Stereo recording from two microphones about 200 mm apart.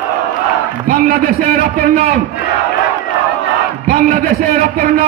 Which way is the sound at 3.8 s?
45° right (ahead or behind).